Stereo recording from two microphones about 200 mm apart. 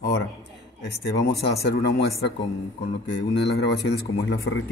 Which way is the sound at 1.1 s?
60° left (ahead or behind).